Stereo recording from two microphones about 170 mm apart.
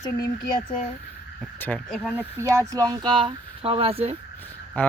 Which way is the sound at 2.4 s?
20° right (ahead or behind).